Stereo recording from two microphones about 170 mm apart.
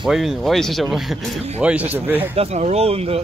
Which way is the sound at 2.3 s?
40° right (ahead or behind).